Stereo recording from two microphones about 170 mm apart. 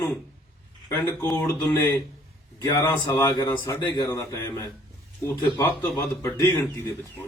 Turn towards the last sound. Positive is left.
turn(degrees=20)  # may be behind; listen again after turning